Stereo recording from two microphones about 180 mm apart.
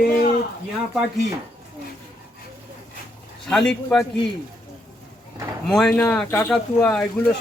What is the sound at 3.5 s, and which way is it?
Speech, 5° left (ahead or behind).